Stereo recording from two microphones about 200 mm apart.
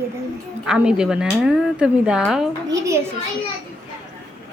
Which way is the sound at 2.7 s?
15° right (ahead or behind).